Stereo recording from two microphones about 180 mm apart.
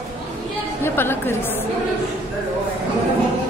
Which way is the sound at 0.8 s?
10° left (ahead or behind).